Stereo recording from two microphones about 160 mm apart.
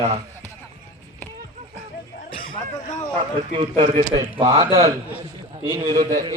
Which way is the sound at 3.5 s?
35° right (ahead or behind).